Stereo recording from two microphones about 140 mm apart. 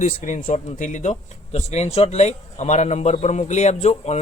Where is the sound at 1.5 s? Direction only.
50° left (ahead or behind).